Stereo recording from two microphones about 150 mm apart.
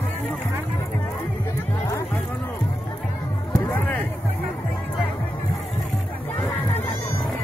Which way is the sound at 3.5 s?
10° left (ahead or behind).